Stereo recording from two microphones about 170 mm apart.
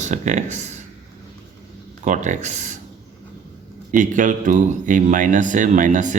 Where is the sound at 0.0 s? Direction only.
45° right (ahead or behind).